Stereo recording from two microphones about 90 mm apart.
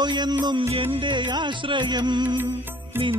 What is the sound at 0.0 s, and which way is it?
Music, 55° right (ahead or behind).